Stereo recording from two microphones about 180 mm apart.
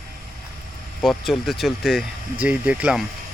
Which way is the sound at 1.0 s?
Centre (ahead or behind).